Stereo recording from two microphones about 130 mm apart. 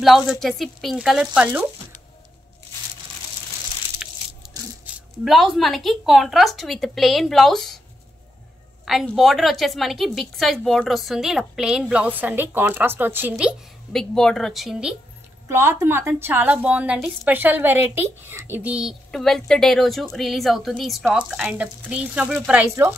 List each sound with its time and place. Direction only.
0.0 s speech: centre (ahead or behind)
4.0 s crushing: 5° right (ahead or behind)
4.8 s speech: centre (ahead or behind)
9.1 s speech: centre (ahead or behind)
13.9 s speech: 5° left (ahead or behind)
15.4 s speech: 20° right (ahead or behind)